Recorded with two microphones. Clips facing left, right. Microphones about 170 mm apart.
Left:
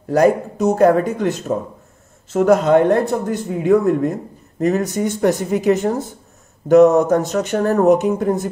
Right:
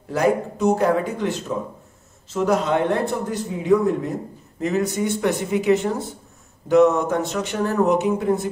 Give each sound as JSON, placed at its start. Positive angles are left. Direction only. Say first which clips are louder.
{"t": 0.1, "sound": "a man's voice", "louder": "left 5 dB", "side_deg": 45}
{"t": 2.3, "sound": "a man's voice", "louder": "left 7 dB", "side_deg": 50}